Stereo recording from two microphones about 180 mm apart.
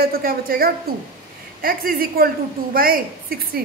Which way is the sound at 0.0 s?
55° right (ahead or behind).